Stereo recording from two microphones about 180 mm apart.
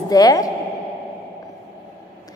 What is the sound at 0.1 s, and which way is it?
Speech, 20° left (ahead or behind).